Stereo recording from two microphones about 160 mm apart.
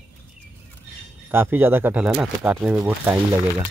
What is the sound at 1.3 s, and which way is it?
Speech, 15° right (ahead or behind).